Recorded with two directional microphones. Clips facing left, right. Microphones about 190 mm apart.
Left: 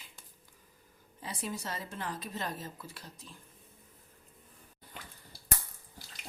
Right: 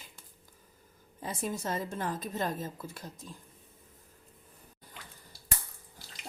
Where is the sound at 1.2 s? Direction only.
45° right (ahead or behind).